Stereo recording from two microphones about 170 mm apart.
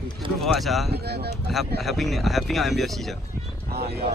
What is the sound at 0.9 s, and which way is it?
Speech, 70° right (ahead or behind).